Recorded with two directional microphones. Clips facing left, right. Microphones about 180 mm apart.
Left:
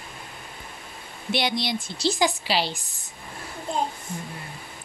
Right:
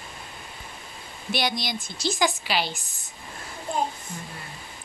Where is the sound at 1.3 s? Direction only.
25° left (ahead or behind).